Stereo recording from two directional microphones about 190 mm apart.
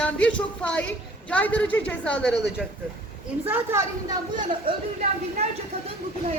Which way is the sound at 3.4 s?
10° right (ahead or behind).